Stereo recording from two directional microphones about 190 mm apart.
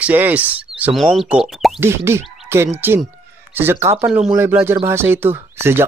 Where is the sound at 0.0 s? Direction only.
10° right (ahead or behind).